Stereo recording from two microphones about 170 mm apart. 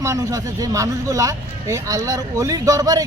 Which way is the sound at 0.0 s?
20° right (ahead or behind).